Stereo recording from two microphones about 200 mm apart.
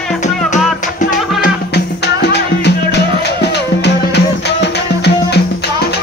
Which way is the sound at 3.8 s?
55° left (ahead or behind).